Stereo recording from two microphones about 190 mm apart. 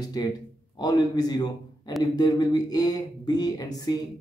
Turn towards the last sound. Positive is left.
turn(degrees=20)  # may be behind; listen again after turning